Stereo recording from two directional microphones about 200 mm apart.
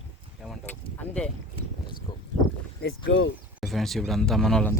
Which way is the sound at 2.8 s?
55° left (ahead or behind).